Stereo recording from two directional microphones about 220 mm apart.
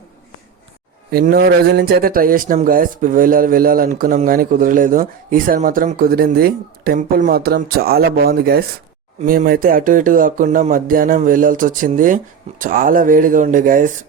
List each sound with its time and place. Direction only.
1.1 s a man's voice: 45° right (ahead or behind)